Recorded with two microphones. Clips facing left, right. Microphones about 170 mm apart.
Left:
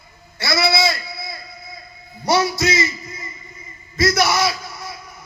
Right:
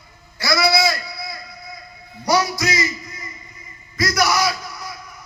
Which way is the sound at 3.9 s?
25° left (ahead or behind).